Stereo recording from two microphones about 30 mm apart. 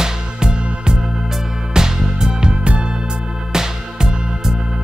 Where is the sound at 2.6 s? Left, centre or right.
Right.